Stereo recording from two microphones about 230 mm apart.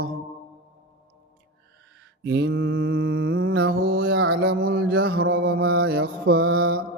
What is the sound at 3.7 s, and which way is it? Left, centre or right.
Mantra, right.